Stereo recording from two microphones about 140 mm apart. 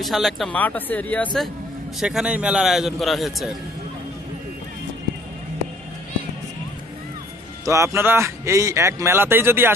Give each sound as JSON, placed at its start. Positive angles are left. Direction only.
{"t": 0.0, "sound": "a man's voice", "side_deg": 0}
{"t": 0.6, "sound": "speech", "side_deg": 10}
{"t": 2.0, "sound": "a man's voice", "side_deg": -5}
{"t": 7.6, "sound": "a man's voice", "side_deg": -20}